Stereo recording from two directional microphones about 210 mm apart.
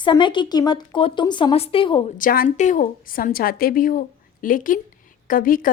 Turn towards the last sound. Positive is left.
turn(degrees=40)  # may be behind; listen again after turning